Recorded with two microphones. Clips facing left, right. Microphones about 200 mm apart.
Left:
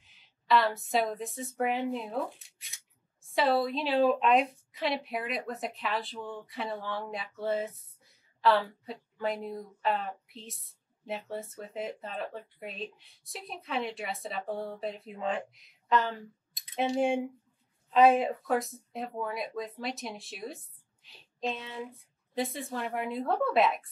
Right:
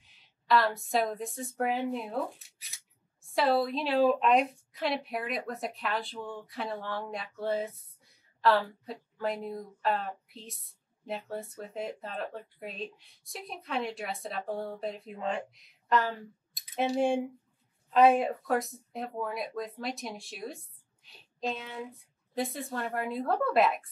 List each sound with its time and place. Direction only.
0.5 s speech: centre (ahead or behind)
21.4 s child singing: centre (ahead or behind)
22.3 s speech: centre (ahead or behind)